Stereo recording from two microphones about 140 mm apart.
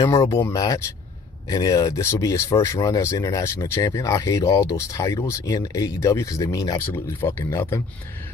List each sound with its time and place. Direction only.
0.0 s speech: 20° left (ahead or behind)